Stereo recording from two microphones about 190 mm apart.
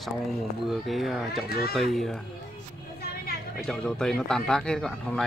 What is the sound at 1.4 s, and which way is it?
Speech, 55° left (ahead or behind).